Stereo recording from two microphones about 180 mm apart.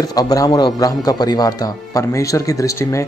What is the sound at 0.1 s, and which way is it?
A man's voice, 20° left (ahead or behind).